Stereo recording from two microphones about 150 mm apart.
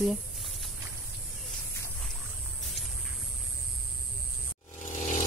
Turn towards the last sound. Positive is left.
turn(degrees=55)  # may be behind; listen again after turning